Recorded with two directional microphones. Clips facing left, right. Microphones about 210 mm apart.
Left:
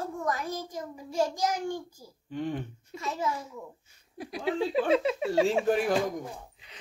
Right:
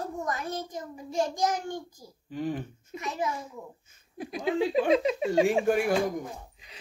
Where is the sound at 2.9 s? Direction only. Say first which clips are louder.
Even; 15° right (ahead or behind).